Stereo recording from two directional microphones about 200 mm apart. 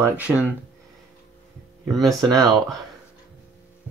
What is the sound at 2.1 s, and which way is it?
Speech, 15° right (ahead or behind).